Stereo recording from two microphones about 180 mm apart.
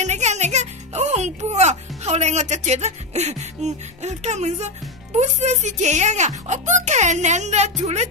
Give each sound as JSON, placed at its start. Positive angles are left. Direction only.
{"t": 0.0, "sound": "music", "side_deg": -40}
{"t": 5.2, "sound": "speech", "side_deg": -40}